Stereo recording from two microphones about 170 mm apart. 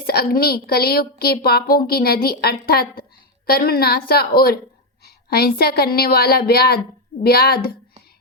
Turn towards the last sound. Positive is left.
turn(degrees=60)  # may be behind; listen again after turning